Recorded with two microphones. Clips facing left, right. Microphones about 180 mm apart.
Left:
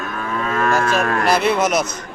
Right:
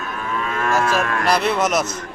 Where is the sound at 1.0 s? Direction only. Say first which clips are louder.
Left 3 dB; 40° left (ahead or behind).